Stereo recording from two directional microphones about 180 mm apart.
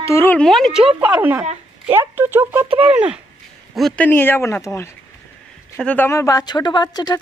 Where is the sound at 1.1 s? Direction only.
10° right (ahead or behind).